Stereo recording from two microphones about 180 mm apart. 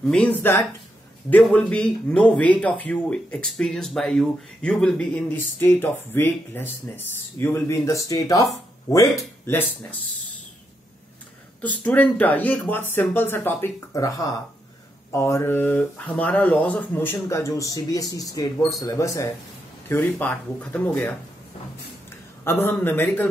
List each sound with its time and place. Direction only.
0.0 s speech: 5° left (ahead or behind)
11.6 s speech: 10° left (ahead or behind)
22.4 s speech: 10° left (ahead or behind)